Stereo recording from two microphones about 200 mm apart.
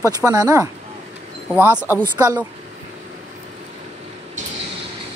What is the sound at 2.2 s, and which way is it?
Speech, 15° right (ahead or behind).